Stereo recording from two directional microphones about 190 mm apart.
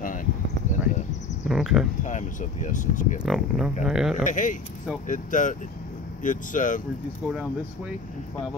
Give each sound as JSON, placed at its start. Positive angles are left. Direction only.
{"t": 0.0, "sound": "a sound", "side_deg": 45}
{"t": 1.5, "sound": "speech", "side_deg": 0}
{"t": 2.0, "sound": "speech", "side_deg": 40}
{"t": 3.2, "sound": "speech", "side_deg": 0}
{"t": 4.2, "sound": "speech", "side_deg": 40}